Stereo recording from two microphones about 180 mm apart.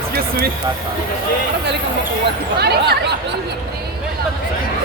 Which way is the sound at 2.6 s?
65° right (ahead or behind).